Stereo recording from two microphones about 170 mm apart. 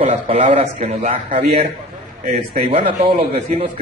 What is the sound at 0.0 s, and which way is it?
A man's voice, 35° right (ahead or behind).